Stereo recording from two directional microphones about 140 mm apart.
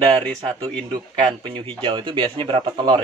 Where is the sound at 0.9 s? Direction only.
35° right (ahead or behind).